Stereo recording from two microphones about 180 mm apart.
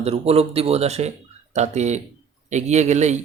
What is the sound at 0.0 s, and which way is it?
Speech, 35° right (ahead or behind).